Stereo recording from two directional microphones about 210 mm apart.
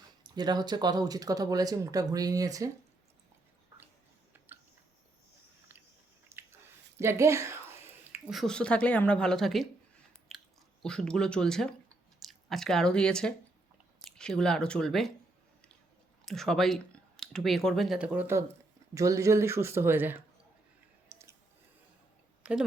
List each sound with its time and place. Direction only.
0.3 s speech: 20° right (ahead or behind)
6.2 s a sound: 10° right (ahead or behind)
7.0 s speech: 15° right (ahead or behind)
10.3 s chewing: centre (ahead or behind)
10.8 s speech: 5° left (ahead or behind)
16.2 s speech: centre (ahead or behind)
21.1 s a sound: 15° right (ahead or behind)
22.4 s speech: 5° right (ahead or behind)